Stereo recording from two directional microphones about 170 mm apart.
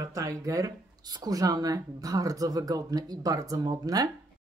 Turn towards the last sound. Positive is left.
turn(degrees=-20)  # may be behind; listen again after turning